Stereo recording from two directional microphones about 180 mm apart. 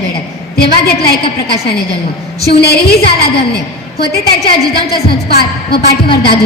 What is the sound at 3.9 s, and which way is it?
A woman's voice, 60° left (ahead or behind).